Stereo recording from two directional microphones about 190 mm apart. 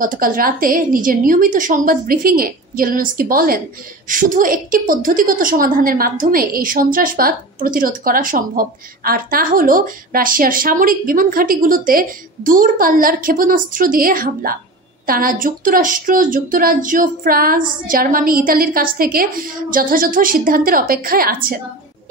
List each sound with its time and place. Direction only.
0.0 s a woman's voice: 45° right (ahead or behind)